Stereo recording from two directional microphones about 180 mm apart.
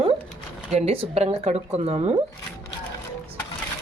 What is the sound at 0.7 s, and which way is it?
Speech, 35° right (ahead or behind).